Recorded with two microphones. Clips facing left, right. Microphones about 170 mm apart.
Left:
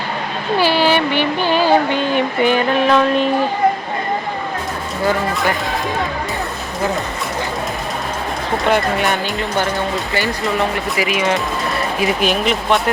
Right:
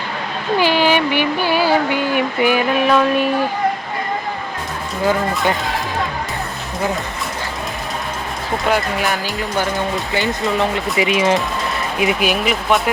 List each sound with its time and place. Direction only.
0.6 s speech: 15° right (ahead or behind)
8.7 s speech: centre (ahead or behind)
10.6 s speech: 25° right (ahead or behind)
11.9 s speech: 15° right (ahead or behind)
12.3 s speech: 5° right (ahead or behind)